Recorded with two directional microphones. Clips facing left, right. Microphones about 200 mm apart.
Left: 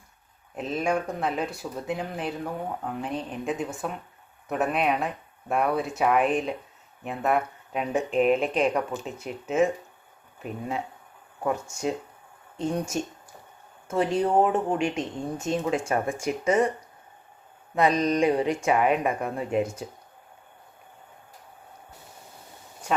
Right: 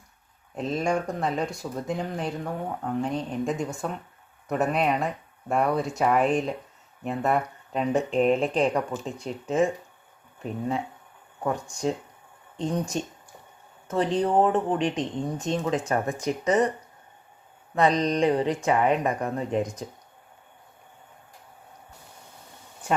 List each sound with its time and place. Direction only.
0.5 s speech: centre (ahead or behind)
11.7 s speech: 5° left (ahead or behind)
12.9 s speech: 25° right (ahead or behind)
13.8 s speech: 10° left (ahead or behind)
17.7 s speech: 10° left (ahead or behind)